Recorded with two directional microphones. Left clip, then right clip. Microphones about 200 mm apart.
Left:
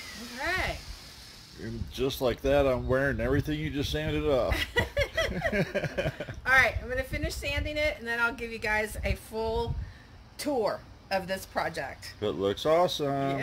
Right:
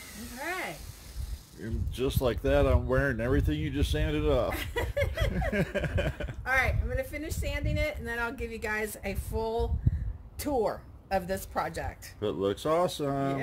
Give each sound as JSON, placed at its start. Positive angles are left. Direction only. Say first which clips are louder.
{"t": 0.4, "sound": "a sound", "louder": "left 4 dB", "side_deg": -25}
{"t": 1.6, "sound": "speech", "louder": "left 1 dB", "side_deg": 0}
{"t": 4.5, "sound": "speech", "louder": "left 4 dB", "side_deg": -30}
{"t": 5.5, "sound": "speech", "louder": "left 1 dB", "side_deg": 0}
{"t": 6.4, "sound": "speech", "louder": "left 5 dB", "side_deg": -30}
{"t": 12.2, "sound": "speech", "louder": "left 1 dB", "side_deg": 0}